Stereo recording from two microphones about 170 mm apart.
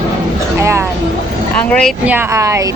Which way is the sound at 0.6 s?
15° right (ahead or behind).